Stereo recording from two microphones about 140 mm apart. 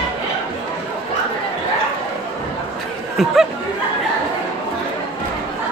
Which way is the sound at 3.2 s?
Centre (ahead or behind).